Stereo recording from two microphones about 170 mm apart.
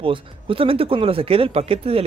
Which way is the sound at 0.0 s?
30° right (ahead or behind).